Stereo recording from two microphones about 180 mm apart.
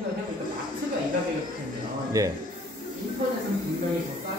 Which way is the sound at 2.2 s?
20° right (ahead or behind).